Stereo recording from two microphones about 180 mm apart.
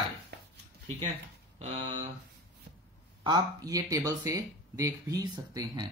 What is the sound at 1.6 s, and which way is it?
Speech, 35° right (ahead or behind).